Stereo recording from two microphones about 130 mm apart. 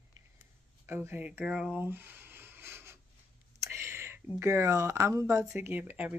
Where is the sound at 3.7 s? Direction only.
20° right (ahead or behind).